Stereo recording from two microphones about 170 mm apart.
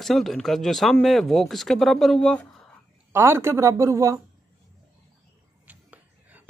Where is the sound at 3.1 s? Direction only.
15° right (ahead or behind).